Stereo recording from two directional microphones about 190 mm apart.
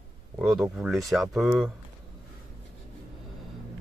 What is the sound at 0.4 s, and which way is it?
Speech, centre (ahead or behind).